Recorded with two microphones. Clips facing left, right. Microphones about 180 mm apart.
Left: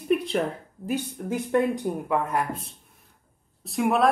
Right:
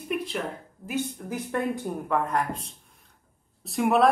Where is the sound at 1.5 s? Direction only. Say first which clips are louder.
Left 5 dB; 15° left (ahead or behind).